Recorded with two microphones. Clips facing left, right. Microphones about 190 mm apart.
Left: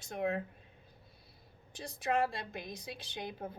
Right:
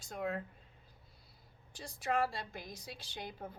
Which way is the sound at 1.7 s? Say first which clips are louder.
Left 2 dB; 20° left (ahead or behind).